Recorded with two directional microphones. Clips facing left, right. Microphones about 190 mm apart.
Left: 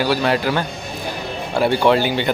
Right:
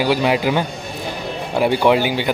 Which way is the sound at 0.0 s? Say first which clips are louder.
Right 1 dB; 15° right (ahead or behind).